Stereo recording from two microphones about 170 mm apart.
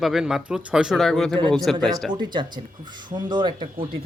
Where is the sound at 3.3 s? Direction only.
25° right (ahead or behind).